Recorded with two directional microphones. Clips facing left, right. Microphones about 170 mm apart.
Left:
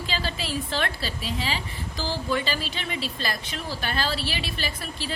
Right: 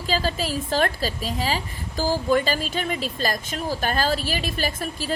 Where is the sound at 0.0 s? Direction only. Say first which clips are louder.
Right 6 dB; 40° right (ahead or behind).